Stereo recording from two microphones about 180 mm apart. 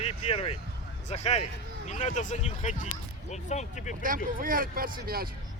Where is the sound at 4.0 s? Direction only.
50° right (ahead or behind).